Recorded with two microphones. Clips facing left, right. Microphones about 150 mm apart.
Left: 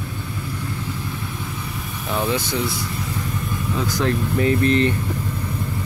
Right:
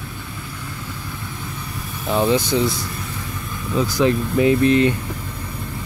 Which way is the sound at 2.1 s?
20° right (ahead or behind).